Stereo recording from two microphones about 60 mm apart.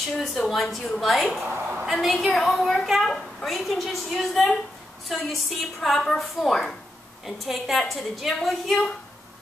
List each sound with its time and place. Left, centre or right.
0.2 s a woman's voice: centre
1.4 s a woman's voice: right
1.9 s a woman's voice: centre